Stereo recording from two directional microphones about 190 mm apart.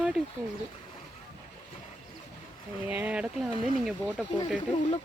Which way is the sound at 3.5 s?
30° left (ahead or behind).